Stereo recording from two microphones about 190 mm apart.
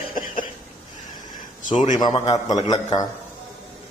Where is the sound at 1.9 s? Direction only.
20° left (ahead or behind).